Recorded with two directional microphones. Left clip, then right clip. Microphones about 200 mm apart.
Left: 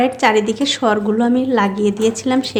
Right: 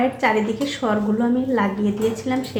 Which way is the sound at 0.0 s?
45° left (ahead or behind).